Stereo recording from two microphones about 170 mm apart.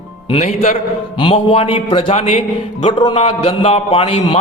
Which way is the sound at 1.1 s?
30° left (ahead or behind).